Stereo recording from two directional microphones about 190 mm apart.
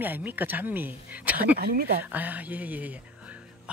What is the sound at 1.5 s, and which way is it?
Speech, 55° right (ahead or behind).